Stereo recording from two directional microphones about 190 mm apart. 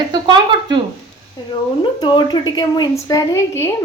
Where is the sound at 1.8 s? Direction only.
20° left (ahead or behind).